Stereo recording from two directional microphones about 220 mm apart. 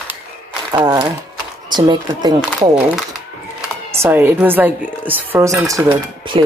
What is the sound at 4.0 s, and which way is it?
A woman's voice, 10° right (ahead or behind).